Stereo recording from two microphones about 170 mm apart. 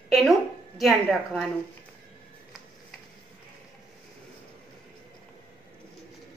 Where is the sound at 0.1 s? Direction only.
Centre (ahead or behind).